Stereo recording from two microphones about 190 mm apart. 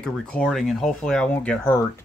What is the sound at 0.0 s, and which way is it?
Speech, 5° left (ahead or behind).